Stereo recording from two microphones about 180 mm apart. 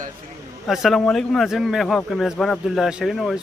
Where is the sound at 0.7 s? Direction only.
Centre (ahead or behind).